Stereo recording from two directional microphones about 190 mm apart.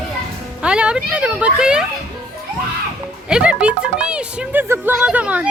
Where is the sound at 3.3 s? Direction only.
5° right (ahead or behind).